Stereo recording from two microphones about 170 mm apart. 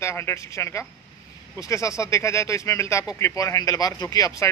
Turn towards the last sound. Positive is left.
turn(degrees=20)  # may be behind; listen again after turning